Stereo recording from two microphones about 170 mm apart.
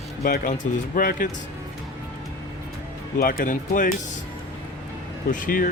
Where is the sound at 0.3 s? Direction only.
55° left (ahead or behind).